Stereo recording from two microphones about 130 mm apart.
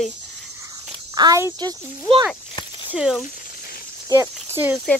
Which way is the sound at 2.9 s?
5° right (ahead or behind).